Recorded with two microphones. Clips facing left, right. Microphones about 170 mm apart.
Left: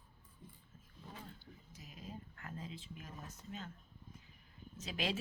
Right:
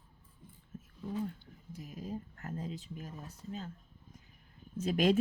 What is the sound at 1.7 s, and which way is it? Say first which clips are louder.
Speech: right 10 dB; 50° right (ahead or behind).